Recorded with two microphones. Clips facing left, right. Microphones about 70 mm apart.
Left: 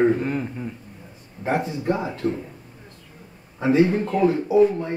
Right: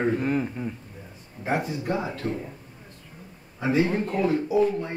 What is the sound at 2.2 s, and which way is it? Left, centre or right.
Speech, right.